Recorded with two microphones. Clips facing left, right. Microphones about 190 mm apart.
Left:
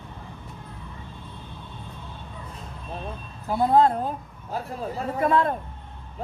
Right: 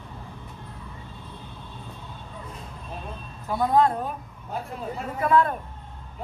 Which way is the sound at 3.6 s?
30° left (ahead or behind).